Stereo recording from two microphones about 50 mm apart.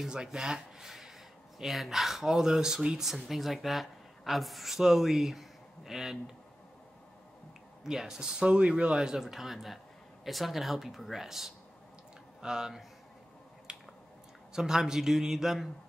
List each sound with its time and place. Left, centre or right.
0.1 s speech: centre
7.8 s speech: centre
13.7 s a sound: centre
14.5 s speech: centre